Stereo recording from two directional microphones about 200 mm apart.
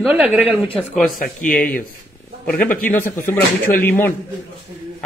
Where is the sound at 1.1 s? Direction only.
45° left (ahead or behind).